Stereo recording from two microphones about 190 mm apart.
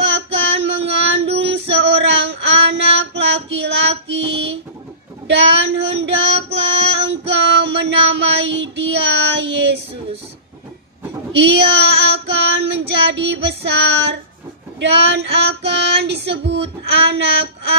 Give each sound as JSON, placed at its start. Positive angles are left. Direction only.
{"t": 0.1, "sound": "child singing", "side_deg": -65}
{"t": 1.2, "sound": "female singing", "side_deg": -35}
{"t": 1.7, "sound": "female singing", "side_deg": -65}
{"t": 5.3, "sound": "child singing", "side_deg": -65}
{"t": 7.1, "sound": "child singing", "side_deg": -65}
{"t": 11.3, "sound": "female singing", "side_deg": -65}